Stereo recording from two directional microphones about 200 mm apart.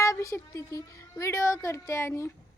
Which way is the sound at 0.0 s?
15° left (ahead or behind).